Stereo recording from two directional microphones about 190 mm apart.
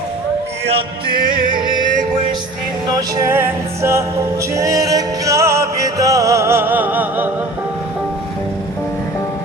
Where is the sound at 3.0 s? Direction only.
20° right (ahead or behind).